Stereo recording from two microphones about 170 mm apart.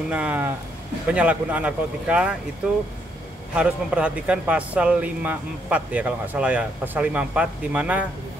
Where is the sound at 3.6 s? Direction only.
5° right (ahead or behind).